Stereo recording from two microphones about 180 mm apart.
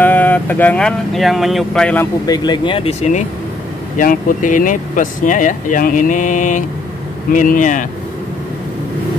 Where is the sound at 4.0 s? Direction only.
45° left (ahead or behind).